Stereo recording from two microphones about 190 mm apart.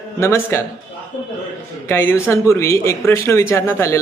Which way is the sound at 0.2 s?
15° left (ahead or behind).